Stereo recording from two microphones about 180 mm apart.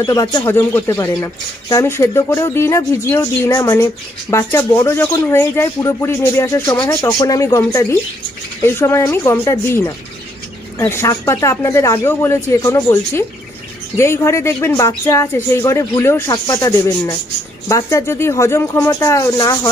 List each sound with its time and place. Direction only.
0.0 s speech: 20° left (ahead or behind)